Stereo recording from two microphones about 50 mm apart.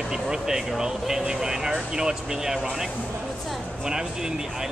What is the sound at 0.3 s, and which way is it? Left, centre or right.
Speech, centre.